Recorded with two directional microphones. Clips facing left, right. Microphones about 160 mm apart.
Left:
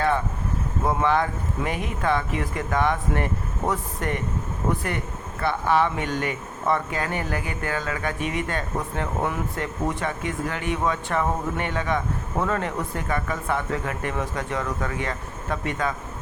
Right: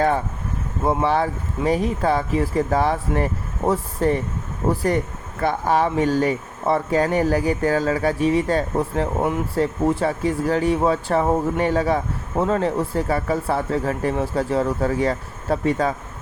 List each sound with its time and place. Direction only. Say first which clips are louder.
0.9 s speech: right 3 dB; 30° right (ahead or behind)